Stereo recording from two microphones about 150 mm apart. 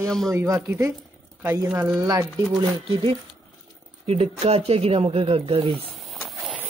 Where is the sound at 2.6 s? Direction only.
35° right (ahead or behind).